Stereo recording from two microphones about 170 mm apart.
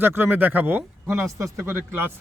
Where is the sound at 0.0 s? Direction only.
10° right (ahead or behind).